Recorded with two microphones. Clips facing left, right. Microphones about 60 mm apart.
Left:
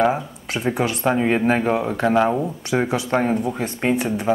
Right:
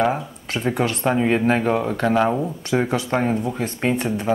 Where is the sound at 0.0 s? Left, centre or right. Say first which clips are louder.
Left 2 dB; centre.